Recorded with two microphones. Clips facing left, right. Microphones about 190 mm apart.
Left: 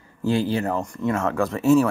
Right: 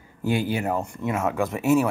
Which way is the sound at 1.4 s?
20° right (ahead or behind).